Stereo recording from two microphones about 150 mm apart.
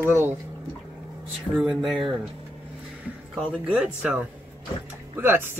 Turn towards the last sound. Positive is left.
turn(degrees=-15)  # may be behind; listen again after turning